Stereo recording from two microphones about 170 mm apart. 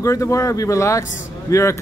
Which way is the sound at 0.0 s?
20° left (ahead or behind).